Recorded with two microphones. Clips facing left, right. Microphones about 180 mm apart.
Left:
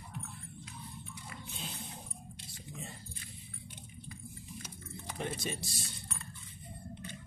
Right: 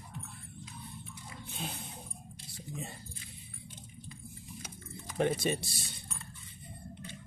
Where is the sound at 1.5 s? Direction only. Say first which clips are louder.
Right 7 dB; 60° right (ahead or behind).